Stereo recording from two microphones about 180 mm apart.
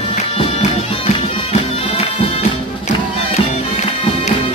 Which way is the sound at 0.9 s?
30° left (ahead or behind).